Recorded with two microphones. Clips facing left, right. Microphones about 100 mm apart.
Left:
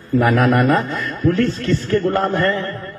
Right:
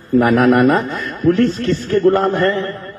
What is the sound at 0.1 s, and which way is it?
A man's voice, 35° right (ahead or behind).